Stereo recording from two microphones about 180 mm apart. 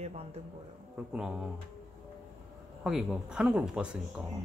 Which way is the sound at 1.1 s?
5° right (ahead or behind).